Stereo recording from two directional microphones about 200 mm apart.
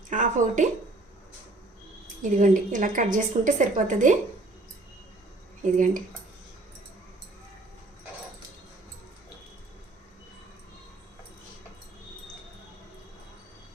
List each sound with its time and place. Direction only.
0.1 s speech: 40° right (ahead or behind)
2.4 s a woman's voice: 40° right (ahead or behind)
5.7 s a woman's voice: 40° right (ahead or behind)